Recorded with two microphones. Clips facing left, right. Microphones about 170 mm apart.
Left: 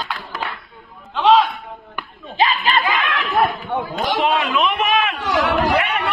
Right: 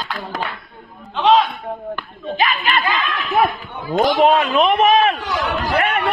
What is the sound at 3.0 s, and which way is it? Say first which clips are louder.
Speech: right 1 dB; 85° left.